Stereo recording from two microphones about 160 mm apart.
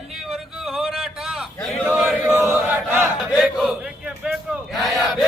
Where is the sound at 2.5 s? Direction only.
15° right (ahead or behind).